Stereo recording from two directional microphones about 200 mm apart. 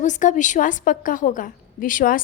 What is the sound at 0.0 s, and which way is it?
A woman's voice, 40° left (ahead or behind).